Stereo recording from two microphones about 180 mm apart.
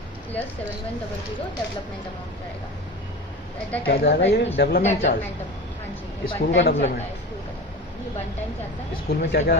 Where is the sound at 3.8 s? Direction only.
60° left (ahead or behind).